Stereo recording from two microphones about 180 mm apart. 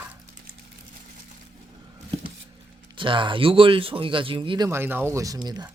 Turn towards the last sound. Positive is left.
turn(degrees=-20)  # may be behind; listen again after turning